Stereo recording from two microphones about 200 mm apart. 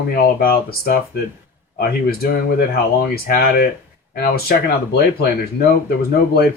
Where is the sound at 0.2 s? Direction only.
50° left (ahead or behind).